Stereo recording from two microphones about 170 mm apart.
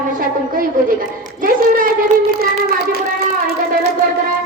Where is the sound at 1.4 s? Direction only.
55° right (ahead or behind).